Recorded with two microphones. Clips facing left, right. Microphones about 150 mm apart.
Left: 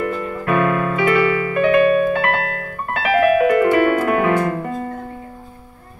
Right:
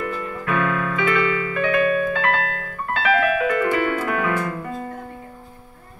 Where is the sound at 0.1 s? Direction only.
30° left (ahead or behind).